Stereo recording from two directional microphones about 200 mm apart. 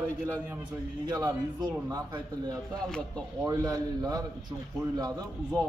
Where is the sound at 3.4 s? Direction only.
15° right (ahead or behind).